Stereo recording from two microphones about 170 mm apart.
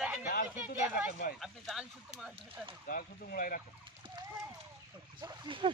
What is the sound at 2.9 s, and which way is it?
Speech, 60° left (ahead or behind).